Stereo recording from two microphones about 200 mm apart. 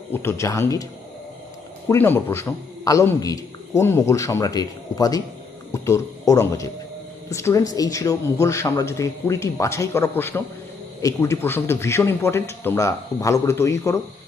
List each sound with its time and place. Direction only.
0.1 s a man's voice: 10° left (ahead or behind)
1.9 s a man's voice: 10° left (ahead or behind)